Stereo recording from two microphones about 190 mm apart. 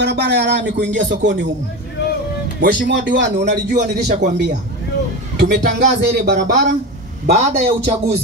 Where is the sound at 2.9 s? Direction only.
70° right (ahead or behind).